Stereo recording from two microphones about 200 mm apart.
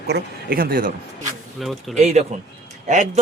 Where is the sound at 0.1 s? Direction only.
45° right (ahead or behind).